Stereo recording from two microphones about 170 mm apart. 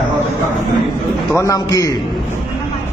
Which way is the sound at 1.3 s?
20° left (ahead or behind).